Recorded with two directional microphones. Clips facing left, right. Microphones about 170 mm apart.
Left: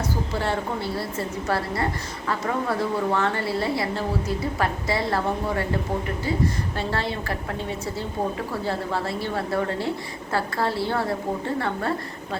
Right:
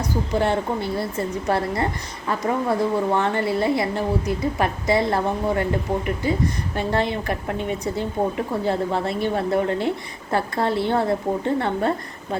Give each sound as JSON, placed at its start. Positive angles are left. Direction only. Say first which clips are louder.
{"t": 0.0, "sound": "a woman's voice", "louder": "right 4 dB", "side_deg": -20}